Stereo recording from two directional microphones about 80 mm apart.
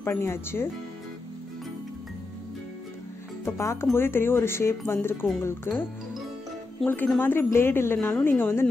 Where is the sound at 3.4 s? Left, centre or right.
Left.